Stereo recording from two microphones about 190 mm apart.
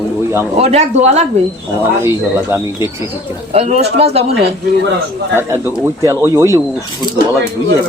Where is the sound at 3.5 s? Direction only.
35° right (ahead or behind).